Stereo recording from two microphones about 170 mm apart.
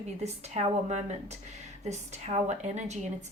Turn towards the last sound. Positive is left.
turn(degrees=-40)  # may be behind; listen again after turning